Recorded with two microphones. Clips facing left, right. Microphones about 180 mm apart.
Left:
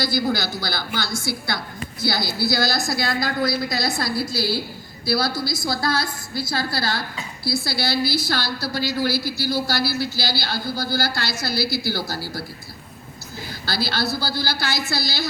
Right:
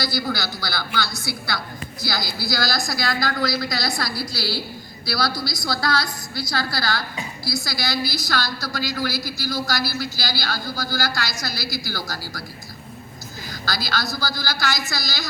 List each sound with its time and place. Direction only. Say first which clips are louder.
0.2 s a woman's voice: left 3 dB; 20° left (ahead or behind)
13.5 s a woman's voice: left 1 dB; 30° left (ahead or behind)